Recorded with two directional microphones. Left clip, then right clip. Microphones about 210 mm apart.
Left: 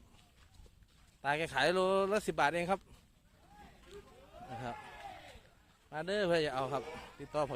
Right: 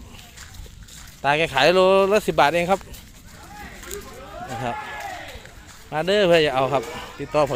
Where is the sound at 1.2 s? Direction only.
20° left (ahead or behind).